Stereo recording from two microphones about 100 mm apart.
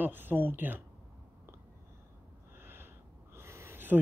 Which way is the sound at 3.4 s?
25° right (ahead or behind).